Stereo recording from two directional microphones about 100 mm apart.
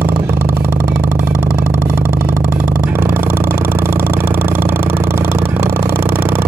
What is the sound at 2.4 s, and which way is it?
Vehicle, 15° right (ahead or behind).